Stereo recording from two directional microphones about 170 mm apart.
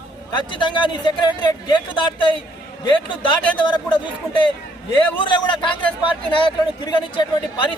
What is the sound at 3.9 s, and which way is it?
Speech, 30° left (ahead or behind).